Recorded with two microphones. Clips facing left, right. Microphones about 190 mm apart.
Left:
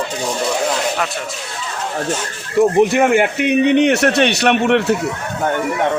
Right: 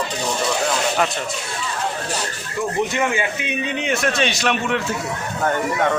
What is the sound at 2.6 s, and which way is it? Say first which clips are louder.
A man's voice: left 9 dB; 65° left (ahead or behind).